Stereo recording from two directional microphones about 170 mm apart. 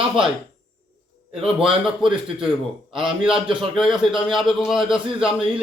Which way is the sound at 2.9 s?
30° right (ahead or behind).